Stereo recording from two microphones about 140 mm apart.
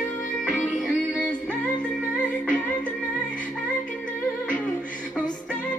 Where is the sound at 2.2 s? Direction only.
70° left (ahead or behind).